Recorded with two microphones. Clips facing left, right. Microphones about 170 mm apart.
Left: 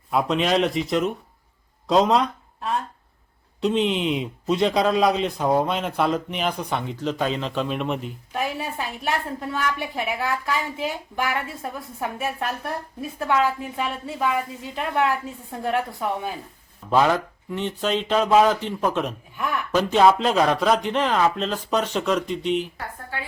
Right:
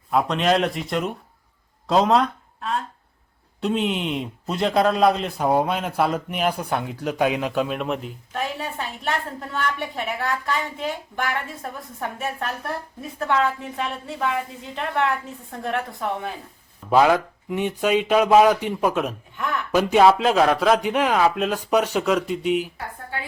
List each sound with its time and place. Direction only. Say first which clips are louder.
0.1 s a woman's voice: right 1 dB; centre (ahead or behind)
16.9 s speech: right 3 dB; 10° right (ahead or behind)